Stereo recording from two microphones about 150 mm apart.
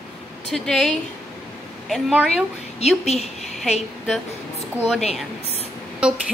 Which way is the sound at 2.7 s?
45° left (ahead or behind).